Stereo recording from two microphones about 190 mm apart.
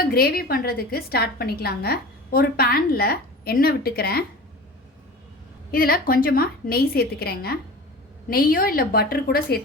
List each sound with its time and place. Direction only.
0.0 s a woman's voice: 55° left (ahead or behind)
5.7 s a woman's voice: 50° left (ahead or behind)